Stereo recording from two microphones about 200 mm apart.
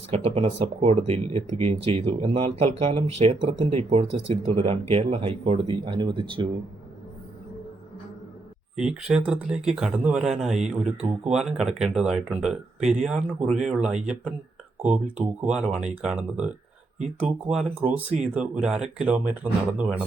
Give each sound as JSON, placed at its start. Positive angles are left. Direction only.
{"t": 0.1, "sound": "speech", "side_deg": -30}
{"t": 8.7, "sound": "speech", "side_deg": -5}